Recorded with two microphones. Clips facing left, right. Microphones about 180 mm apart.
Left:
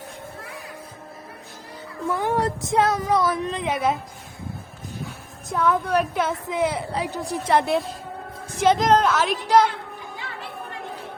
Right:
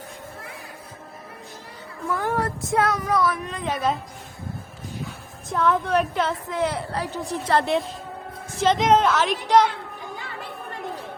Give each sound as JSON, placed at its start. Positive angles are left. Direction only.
{"t": 2.1, "sound": "speech", "side_deg": 20}
{"t": 3.6, "sound": "a woman's voice", "side_deg": 15}
{"t": 5.5, "sound": "speech", "side_deg": 0}
{"t": 6.2, "sound": "a woman's voice", "side_deg": 15}
{"t": 8.8, "sound": "speech", "side_deg": 0}